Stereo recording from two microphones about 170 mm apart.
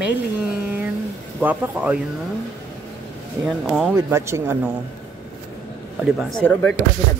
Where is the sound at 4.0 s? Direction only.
15° right (ahead or behind).